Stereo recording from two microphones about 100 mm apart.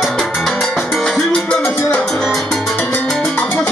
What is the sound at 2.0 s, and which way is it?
Music, 10° left (ahead or behind).